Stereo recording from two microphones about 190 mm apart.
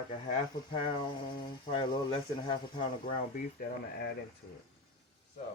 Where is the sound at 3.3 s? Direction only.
45° left (ahead or behind).